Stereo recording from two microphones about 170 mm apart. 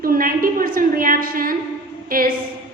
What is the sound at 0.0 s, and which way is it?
A woman's voice, 55° right (ahead or behind).